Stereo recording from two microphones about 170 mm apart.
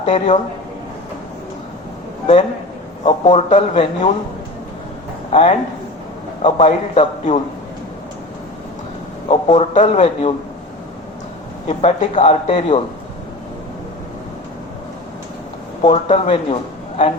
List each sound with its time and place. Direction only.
0.0 s a man's voice: 40° left (ahead or behind)
3.0 s speech: 40° left (ahead or behind)
5.3 s a man's voice: 45° left (ahead or behind)
9.3 s speech: 35° left (ahead or behind)
11.8 s speech: 40° left (ahead or behind)
15.8 s speech: 40° left (ahead or behind)